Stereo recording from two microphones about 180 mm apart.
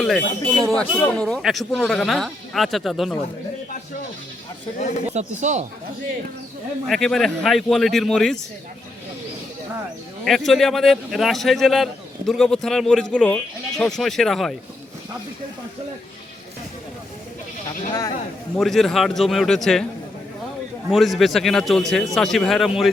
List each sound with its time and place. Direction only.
0.0 s a man's voice: centre (ahead or behind)
5.1 s speech: 40° right (ahead or behind)
6.8 s a man's voice: centre (ahead or behind)
10.2 s a man's voice: centre (ahead or behind)
18.5 s a man's voice: centre (ahead or behind)
20.9 s a man's voice: centre (ahead or behind)